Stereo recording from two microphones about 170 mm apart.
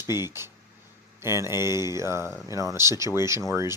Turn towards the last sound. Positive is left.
turn(degrees=-15)  # may be behind; listen again after turning